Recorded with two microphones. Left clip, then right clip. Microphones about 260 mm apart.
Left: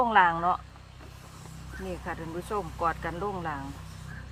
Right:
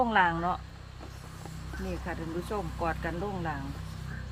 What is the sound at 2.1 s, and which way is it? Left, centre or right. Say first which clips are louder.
Speech: left 1 dB; centre.